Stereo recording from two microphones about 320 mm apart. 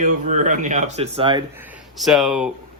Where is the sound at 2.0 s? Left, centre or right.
Centre.